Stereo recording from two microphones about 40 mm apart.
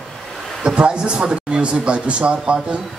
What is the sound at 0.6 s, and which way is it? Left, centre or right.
A man's voice, right.